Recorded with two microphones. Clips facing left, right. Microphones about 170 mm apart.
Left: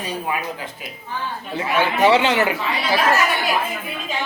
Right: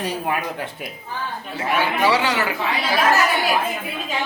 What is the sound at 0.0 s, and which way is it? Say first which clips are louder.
Speech: right 1 dB; 60° right (ahead or behind).